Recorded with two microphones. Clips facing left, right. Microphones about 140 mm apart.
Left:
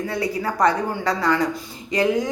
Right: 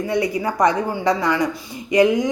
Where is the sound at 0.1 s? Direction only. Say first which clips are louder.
Right 4 dB; 15° right (ahead or behind).